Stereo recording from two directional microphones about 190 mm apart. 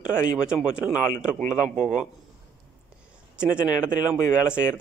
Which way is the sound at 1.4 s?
5° right (ahead or behind).